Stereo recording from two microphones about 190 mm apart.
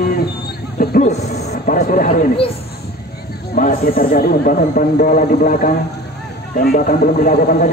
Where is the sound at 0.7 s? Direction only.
45° left (ahead or behind).